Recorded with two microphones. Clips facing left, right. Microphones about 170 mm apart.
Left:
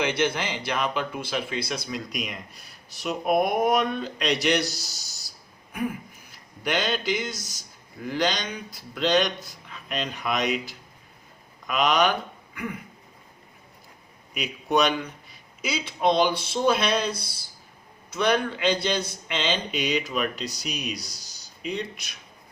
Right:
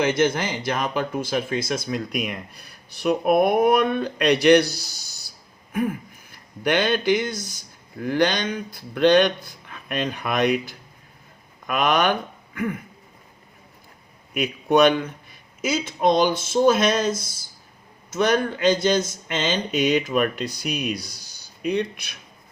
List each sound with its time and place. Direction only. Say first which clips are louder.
0.0 s speech: right 5 dB; 40° right (ahead or behind); by 4.8 s 60° right (ahead or behind)
6.3 s speech: right 6 dB; 55° right (ahead or behind)
14.3 s speech: right 5 dB; 50° right (ahead or behind)